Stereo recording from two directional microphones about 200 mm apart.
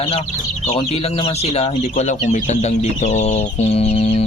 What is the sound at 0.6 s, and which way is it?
Speech, 30° left (ahead or behind).